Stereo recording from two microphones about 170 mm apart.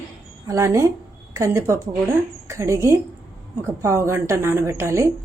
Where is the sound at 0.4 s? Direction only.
20° right (ahead or behind).